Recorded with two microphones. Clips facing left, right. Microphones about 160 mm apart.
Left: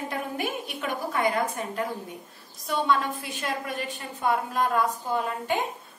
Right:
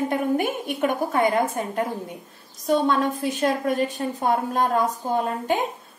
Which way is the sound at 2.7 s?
40° right (ahead or behind).